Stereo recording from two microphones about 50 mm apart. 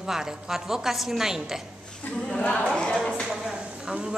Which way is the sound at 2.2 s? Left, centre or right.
Centre.